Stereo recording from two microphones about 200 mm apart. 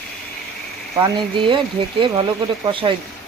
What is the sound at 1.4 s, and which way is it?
Speech, 25° right (ahead or behind).